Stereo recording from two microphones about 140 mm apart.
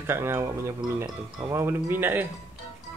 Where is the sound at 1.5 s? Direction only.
20° right (ahead or behind).